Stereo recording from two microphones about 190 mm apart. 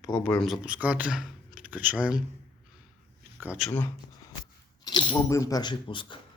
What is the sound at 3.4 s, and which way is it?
Speech, 5° right (ahead or behind).